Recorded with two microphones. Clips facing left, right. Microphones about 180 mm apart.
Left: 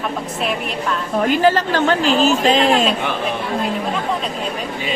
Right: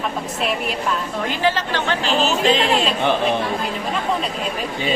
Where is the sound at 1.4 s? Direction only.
45° left (ahead or behind).